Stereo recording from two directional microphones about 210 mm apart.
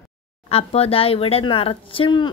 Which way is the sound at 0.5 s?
30° left (ahead or behind).